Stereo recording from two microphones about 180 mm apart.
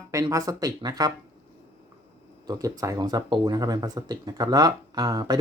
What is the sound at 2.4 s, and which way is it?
Speech, 20° right (ahead or behind).